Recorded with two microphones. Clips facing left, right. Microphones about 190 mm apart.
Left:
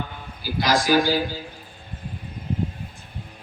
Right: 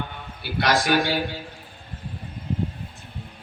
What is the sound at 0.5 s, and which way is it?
Speech, 65° right (ahead or behind).